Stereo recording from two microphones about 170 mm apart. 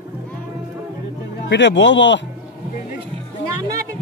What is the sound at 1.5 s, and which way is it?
Speech, 90° left.